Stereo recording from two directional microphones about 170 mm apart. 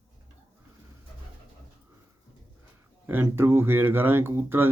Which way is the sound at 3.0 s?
10° right (ahead or behind).